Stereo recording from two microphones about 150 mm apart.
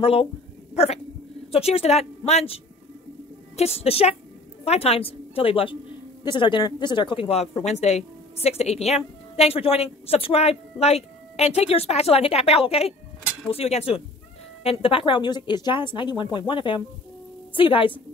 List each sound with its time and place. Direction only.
0.0 s a woman's voice: 40° left (ahead or behind)